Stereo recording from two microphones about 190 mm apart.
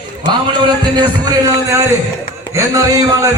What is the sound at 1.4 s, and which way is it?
Speech, 15° right (ahead or behind).